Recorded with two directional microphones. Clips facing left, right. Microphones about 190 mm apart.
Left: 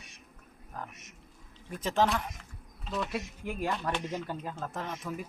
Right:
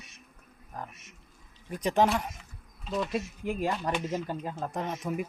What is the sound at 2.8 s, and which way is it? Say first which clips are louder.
Speech: right 3 dB; centre (ahead or behind).